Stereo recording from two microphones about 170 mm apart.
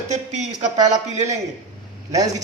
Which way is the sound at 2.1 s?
20° right (ahead or behind).